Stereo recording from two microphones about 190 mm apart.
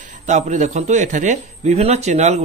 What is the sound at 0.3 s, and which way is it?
Speech, 40° right (ahead or behind).